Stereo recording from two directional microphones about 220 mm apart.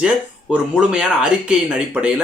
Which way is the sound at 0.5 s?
5° right (ahead or behind).